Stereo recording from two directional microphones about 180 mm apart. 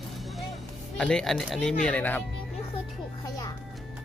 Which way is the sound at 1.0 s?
5° left (ahead or behind).